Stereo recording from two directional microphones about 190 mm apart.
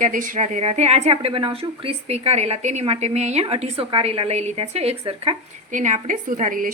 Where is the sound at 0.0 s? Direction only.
45° right (ahead or behind).